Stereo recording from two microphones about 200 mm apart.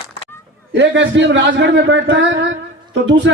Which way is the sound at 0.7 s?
60° right (ahead or behind).